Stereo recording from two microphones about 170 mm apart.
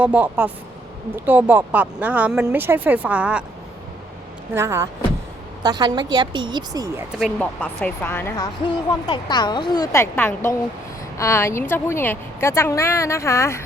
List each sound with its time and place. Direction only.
0.0 s speech: 10° right (ahead or behind)
4.5 s speech: 15° right (ahead or behind)
7.2 s speech: centre (ahead or behind)
9.0 s speech: 25° left (ahead or behind)